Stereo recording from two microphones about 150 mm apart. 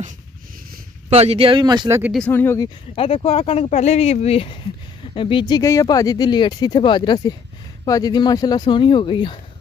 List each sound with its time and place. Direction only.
1.1 s speech: 45° right (ahead or behind)
2.1 s speech: 10° left (ahead or behind)
3.0 s speech: 40° left (ahead or behind)
5.6 s speech: 20° left (ahead or behind)